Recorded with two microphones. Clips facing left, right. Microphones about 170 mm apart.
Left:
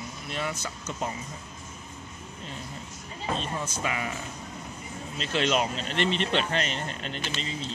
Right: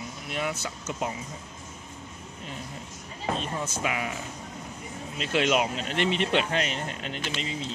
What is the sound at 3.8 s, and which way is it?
Speech, 10° right (ahead or behind).